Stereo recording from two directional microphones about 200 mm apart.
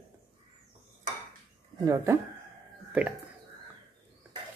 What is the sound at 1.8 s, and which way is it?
Speech, 15° right (ahead or behind).